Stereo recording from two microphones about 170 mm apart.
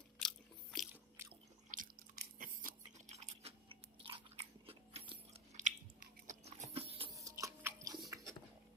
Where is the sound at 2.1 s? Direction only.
55° right (ahead or behind).